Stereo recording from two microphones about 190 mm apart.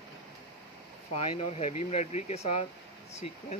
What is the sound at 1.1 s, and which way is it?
Speech, 30° left (ahead or behind).